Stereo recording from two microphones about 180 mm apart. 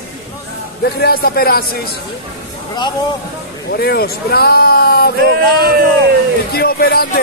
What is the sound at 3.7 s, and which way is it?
A man's voice, 60° left (ahead or behind).